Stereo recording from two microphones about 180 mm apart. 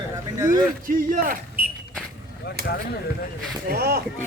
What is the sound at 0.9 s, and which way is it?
Speech, 50° right (ahead or behind).